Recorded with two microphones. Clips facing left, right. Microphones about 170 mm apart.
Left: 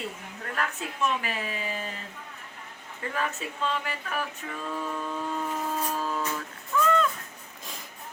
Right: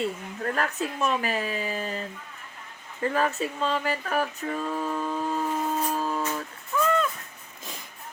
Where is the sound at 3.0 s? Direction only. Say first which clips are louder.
Right 6 dB; 40° right (ahead or behind).